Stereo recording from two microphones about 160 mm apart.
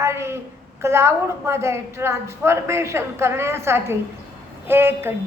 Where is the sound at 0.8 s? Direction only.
15° right (ahead or behind).